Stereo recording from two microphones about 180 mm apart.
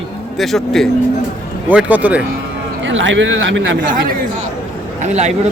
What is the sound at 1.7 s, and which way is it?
Speech, 10° right (ahead or behind).